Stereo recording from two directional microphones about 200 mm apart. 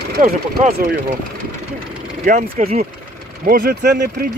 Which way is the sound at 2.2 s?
40° right (ahead or behind).